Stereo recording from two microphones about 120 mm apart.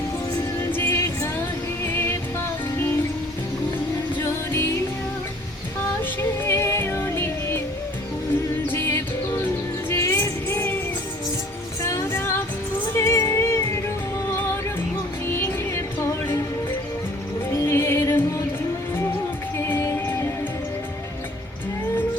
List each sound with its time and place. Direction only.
0.6 s music: 20° left (ahead or behind)
4.2 s music: 20° left (ahead or behind)
6.0 s music: 20° left (ahead or behind)
8.6 s music: 20° left (ahead or behind)
11.8 s music: 25° left (ahead or behind)
17.5 s music: 20° left (ahead or behind)
19.5 s music: 20° left (ahead or behind)